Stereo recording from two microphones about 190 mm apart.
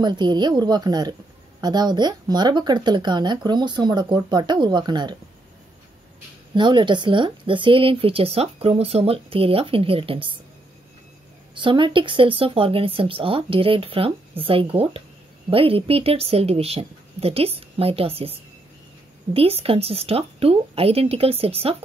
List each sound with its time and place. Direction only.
0.0 s speech: 25° right (ahead or behind)
6.5 s speech: 25° right (ahead or behind)
11.5 s speech: 25° right (ahead or behind)
19.3 s speech: 30° right (ahead or behind)